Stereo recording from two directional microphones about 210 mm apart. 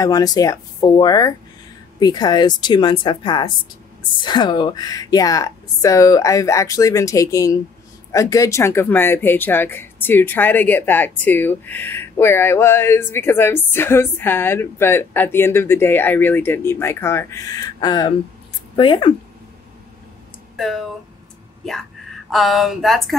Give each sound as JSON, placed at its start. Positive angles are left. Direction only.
{"t": 0.0, "sound": "a woman's voice", "side_deg": 15}
{"t": 20.5, "sound": "speech", "side_deg": 0}
{"t": 22.3, "sound": "speech", "side_deg": 0}